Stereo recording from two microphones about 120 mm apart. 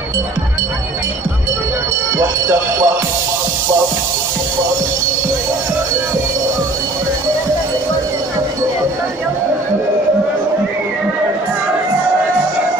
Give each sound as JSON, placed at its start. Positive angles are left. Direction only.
{"t": 2.1, "sound": "music", "side_deg": -25}